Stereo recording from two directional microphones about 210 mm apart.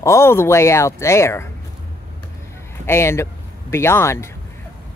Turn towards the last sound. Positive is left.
turn(degrees=10)  # may be behind; listen again after turning